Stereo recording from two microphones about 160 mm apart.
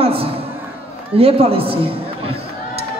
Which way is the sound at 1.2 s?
35° right (ahead or behind).